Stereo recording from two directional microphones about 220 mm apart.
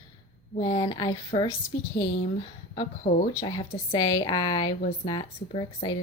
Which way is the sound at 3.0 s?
30° left (ahead or behind).